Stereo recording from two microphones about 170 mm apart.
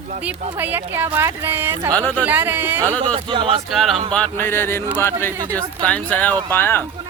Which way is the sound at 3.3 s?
30° right (ahead or behind).